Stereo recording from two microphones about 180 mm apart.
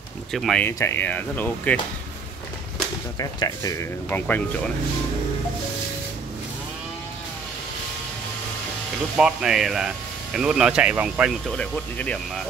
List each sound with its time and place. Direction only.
0.3 s speech: centre (ahead or behind)
0.7 s speech: 15° left (ahead or behind)
3.2 s speech: 20° left (ahead or behind)
9.1 s speech: 5° right (ahead or behind)